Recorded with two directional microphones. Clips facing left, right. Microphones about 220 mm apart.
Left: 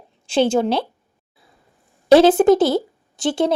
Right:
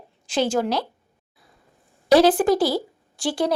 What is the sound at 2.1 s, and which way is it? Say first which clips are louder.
A woman's voice: left 5 dB; 25° left (ahead or behind).